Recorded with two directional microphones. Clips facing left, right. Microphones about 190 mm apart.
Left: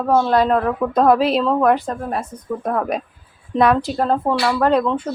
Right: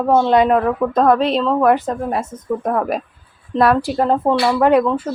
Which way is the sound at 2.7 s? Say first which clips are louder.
Even; 5° right (ahead or behind).